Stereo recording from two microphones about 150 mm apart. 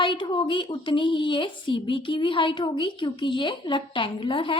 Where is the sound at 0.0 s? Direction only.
30° left (ahead or behind).